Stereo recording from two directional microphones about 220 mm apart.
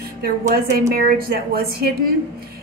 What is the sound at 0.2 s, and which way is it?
A woman's voice, 40° right (ahead or behind).